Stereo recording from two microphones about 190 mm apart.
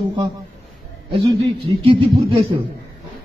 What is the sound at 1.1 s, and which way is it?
A man's voice, 30° right (ahead or behind).